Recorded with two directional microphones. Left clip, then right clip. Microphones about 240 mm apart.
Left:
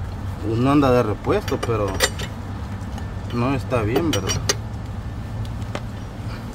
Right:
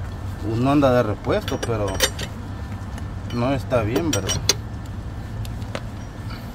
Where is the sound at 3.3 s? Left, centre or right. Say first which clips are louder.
Right 1 dB; right.